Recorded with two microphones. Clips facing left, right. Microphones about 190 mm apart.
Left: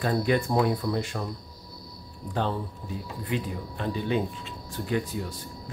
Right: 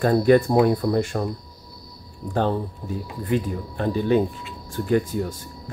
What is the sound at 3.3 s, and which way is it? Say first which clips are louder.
Speech: right 7 dB; 45° right (ahead or behind).